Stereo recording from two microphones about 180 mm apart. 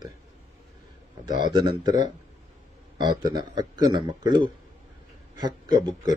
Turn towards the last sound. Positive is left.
turn(degrees=-25)  # may be behind; listen again after turning